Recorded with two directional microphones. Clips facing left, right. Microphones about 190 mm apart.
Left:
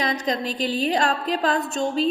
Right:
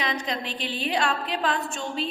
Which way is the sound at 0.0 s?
40° left (ahead or behind).